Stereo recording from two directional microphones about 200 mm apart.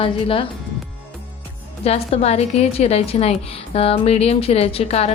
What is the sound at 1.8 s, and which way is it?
Speech, 30° left (ahead or behind).